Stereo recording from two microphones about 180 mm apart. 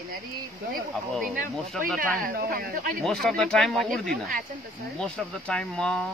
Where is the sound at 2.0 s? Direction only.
55° right (ahead or behind).